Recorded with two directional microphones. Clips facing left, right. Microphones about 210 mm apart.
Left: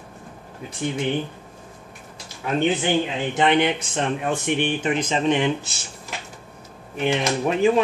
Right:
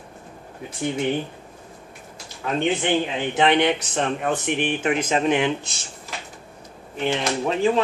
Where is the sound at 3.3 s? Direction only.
Centre (ahead or behind).